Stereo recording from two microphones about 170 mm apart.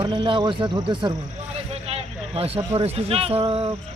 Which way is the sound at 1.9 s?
35° right (ahead or behind).